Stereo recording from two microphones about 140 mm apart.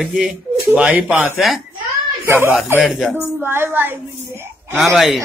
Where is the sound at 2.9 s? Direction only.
Centre (ahead or behind).